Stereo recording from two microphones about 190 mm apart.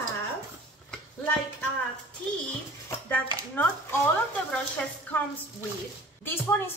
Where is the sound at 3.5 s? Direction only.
10° left (ahead or behind).